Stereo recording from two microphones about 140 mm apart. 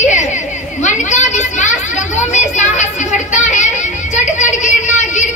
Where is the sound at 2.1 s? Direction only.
55° left (ahead or behind).